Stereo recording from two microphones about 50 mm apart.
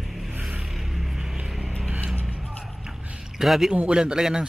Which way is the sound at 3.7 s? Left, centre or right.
Centre.